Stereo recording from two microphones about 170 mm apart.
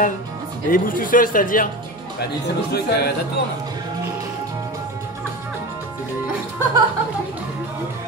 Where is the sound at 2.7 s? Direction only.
70° left (ahead or behind).